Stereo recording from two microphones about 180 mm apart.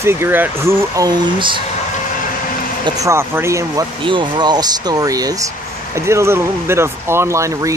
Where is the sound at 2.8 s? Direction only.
20° right (ahead or behind).